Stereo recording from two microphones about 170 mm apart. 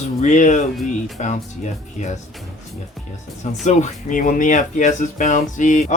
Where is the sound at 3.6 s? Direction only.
45° left (ahead or behind).